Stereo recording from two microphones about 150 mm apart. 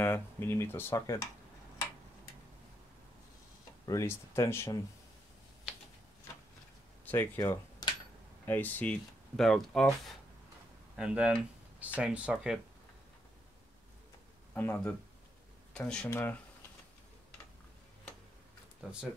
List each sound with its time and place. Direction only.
0.0 s speech: 15° left (ahead or behind)
3.8 s speech: 20° left (ahead or behind)
7.1 s speech: 15° left (ahead or behind); by 12.5 s 10° right (ahead or behind)
14.5 s speech: 15° left (ahead or behind)
18.8 s speech: 5° right (ahead or behind)